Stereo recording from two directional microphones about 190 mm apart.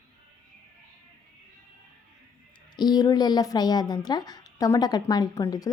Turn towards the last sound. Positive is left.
turn(degrees=20)  # may be behind; listen again after turning